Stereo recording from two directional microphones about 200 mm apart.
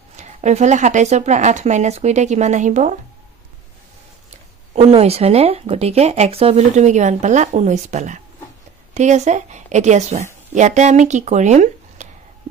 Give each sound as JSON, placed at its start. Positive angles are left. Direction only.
{"t": 0.2, "sound": "speech", "side_deg": -35}
{"t": 4.7, "sound": "speech", "side_deg": -30}